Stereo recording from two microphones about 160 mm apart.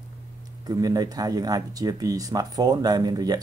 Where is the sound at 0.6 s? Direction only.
25° right (ahead or behind).